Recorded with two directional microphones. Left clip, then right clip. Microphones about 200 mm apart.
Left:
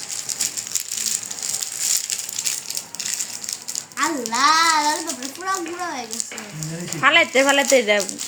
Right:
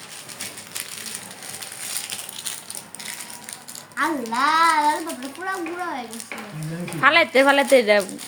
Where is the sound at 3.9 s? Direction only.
25° right (ahead or behind).